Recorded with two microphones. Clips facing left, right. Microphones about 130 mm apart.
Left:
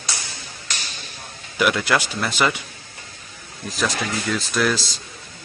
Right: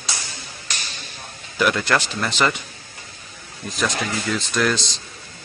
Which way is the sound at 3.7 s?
Centre (ahead or behind).